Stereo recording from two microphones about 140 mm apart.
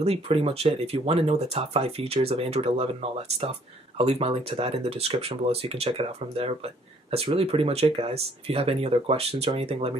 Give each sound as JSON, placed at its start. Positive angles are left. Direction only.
{"t": 0.0, "sound": "speech", "side_deg": -45}